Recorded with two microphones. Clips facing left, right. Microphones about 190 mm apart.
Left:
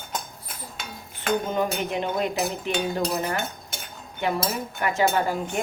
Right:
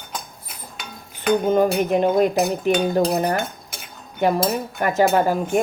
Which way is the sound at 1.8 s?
45° right (ahead or behind).